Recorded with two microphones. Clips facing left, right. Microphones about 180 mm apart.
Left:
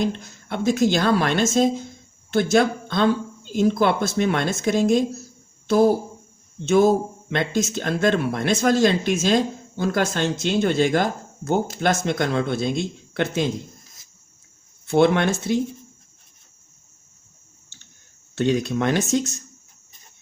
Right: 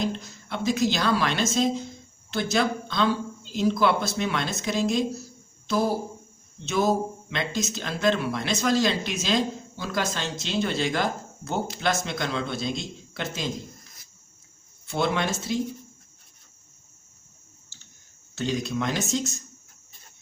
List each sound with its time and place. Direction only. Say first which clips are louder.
0.0 s speech: left 4 dB; 55° left (ahead or behind)
14.8 s speech: left 8 dB; 60° left (ahead or behind)
18.3 s speech: left 6 dB; 60° left (ahead or behind)